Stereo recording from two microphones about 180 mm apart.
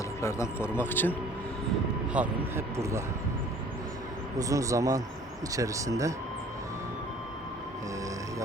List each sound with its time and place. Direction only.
0.2 s speech: 15° left (ahead or behind)
2.1 s speech: 15° right (ahead or behind)
4.4 s speech: 20° right (ahead or behind)